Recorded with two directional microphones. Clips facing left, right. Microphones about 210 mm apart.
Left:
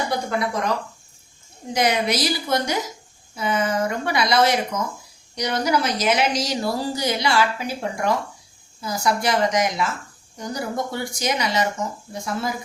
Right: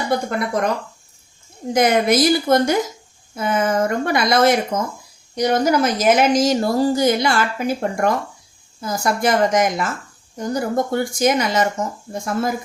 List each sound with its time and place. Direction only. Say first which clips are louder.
0.3 s speech: right 2 dB; 55° right (ahead or behind)
1.7 s speech: right 6 dB; 50° right (ahead or behind)